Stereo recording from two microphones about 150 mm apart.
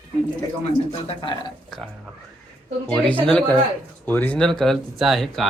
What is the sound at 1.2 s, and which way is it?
Speech, 30° left (ahead or behind).